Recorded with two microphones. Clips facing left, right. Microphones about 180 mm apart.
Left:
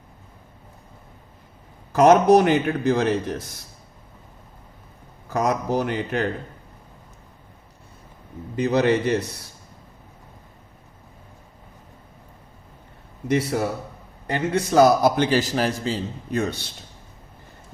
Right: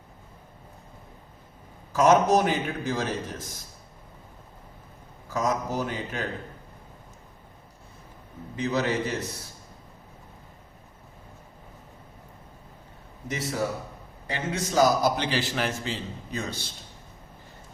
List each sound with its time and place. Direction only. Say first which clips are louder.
1.9 s a man's voice: left 6 dB; 65° left (ahead or behind)
5.3 s speech: left 5 dB; 65° left (ahead or behind)
8.5 s speech: left 7 dB; 65° left (ahead or behind)
13.2 s a man's voice: left 7 dB; 65° left (ahead or behind); by 16.0 s 35° left (ahead or behind)
16.3 s a man's voice: left 9 dB; 60° left (ahead or behind)